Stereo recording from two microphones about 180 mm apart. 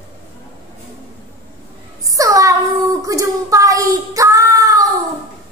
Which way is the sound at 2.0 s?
20° right (ahead or behind).